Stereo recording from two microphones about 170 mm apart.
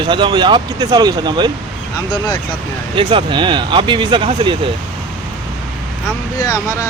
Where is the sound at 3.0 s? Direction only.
30° right (ahead or behind).